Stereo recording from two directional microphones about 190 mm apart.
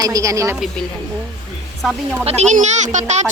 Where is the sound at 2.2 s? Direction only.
35° right (ahead or behind).